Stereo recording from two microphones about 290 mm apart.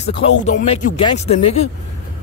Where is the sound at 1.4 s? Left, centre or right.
Left.